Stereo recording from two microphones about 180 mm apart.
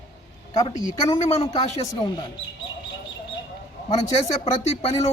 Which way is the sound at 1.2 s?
35° left (ahead or behind).